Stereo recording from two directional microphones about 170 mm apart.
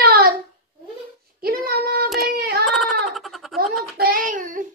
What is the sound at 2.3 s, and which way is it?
Child singing, 65° right (ahead or behind).